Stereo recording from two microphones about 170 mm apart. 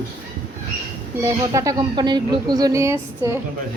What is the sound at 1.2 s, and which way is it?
Speech, 20° right (ahead or behind).